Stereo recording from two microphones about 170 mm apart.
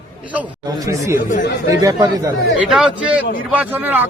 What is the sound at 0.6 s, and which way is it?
Speech, 20° right (ahead or behind).